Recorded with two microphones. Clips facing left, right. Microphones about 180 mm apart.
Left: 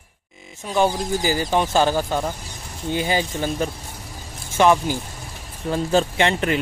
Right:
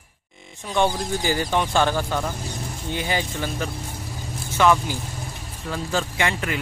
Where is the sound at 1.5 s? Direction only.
25° left (ahead or behind).